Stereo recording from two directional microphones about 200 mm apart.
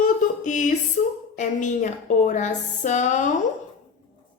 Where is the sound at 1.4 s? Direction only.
40° left (ahead or behind).